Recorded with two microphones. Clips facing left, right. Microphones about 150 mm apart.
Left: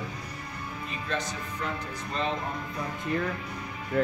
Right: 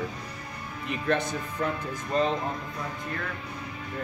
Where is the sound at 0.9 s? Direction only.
60° right (ahead or behind).